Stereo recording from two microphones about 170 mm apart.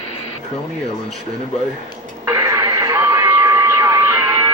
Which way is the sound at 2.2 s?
15° right (ahead or behind).